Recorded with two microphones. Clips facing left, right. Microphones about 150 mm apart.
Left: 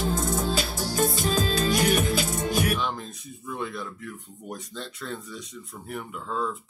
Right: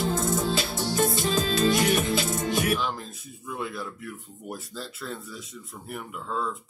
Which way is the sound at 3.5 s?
5° right (ahead or behind).